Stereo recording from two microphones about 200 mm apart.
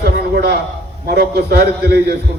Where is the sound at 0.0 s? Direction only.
55° right (ahead or behind).